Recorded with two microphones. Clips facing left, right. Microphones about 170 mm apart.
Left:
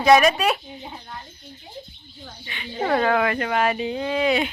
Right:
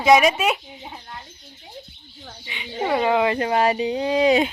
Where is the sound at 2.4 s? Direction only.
15° right (ahead or behind); by 3.9 s 30° right (ahead or behind).